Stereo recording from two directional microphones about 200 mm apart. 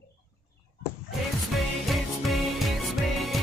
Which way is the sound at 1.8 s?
Centre (ahead or behind).